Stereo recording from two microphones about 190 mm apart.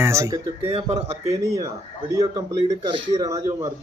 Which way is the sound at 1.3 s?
20° right (ahead or behind).